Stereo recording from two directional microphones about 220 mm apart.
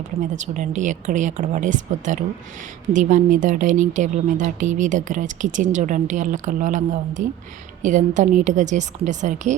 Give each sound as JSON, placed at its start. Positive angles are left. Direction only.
{"t": 0.3, "sound": "a woman's voice", "side_deg": -35}